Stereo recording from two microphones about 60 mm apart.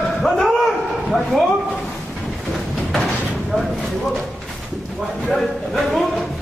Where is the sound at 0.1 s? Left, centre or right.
Centre.